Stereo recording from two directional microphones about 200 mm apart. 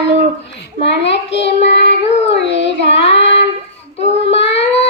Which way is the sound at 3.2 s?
30° left (ahead or behind).